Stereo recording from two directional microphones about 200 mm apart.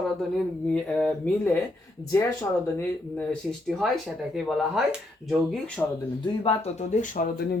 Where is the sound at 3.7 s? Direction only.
Centre (ahead or behind).